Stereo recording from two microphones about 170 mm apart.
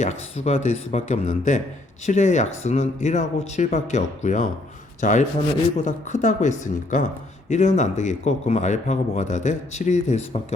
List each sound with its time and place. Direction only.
0.0 s speech: 40° left (ahead or behind)